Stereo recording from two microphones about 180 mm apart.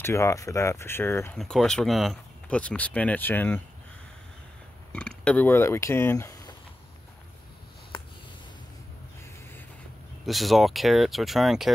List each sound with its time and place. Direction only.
0.0 s speech: 15° left (ahead or behind)
1.4 s speech: 5° left (ahead or behind)
4.9 s speech: 5° left (ahead or behind)
10.2 s speech: centre (ahead or behind)